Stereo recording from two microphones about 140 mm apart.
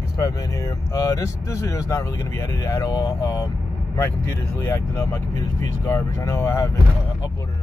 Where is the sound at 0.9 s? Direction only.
25° left (ahead or behind).